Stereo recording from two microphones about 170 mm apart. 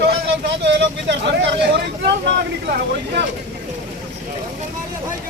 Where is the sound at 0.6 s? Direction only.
90° right.